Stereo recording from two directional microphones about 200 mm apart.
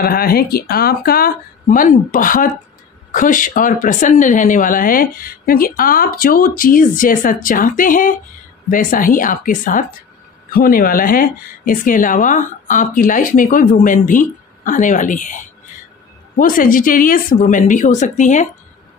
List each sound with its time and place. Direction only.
0.0 s a woman's voice: 50° left (ahead or behind)